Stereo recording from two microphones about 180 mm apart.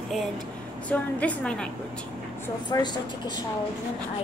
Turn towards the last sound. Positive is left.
turn(degrees=25)  # may be behind; listen again after turning